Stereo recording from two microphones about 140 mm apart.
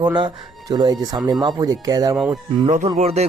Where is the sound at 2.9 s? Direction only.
50° right (ahead or behind).